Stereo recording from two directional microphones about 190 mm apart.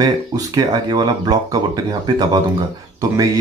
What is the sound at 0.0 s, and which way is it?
Speech, 20° right (ahead or behind).